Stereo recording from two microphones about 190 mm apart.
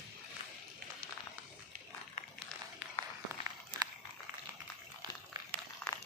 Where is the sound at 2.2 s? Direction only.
35° left (ahead or behind).